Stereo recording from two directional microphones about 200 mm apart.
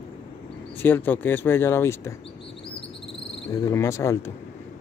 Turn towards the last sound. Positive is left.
turn(degrees=15)  # may be behind; listen again after turning